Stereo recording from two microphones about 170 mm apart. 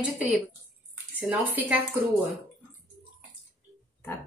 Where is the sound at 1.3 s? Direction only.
10° right (ahead or behind).